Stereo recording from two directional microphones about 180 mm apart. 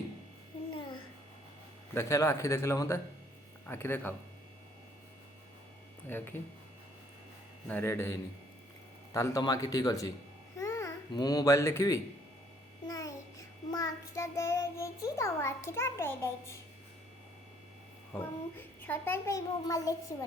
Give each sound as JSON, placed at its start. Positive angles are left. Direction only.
{"t": 2.0, "sound": "a child's voice", "side_deg": 15}
{"t": 6.1, "sound": "a child's voice", "side_deg": 10}
{"t": 7.7, "sound": "a child's voice", "side_deg": 15}
{"t": 9.1, "sound": "a child's voice", "side_deg": 15}
{"t": 12.9, "sound": "babbling", "side_deg": 20}
{"t": 13.7, "sound": "child singing", "side_deg": 20}
{"t": 18.1, "sound": "a child's voice", "side_deg": 10}